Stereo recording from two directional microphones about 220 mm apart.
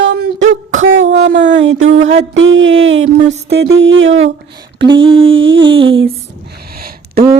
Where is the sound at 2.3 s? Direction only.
60° right (ahead or behind).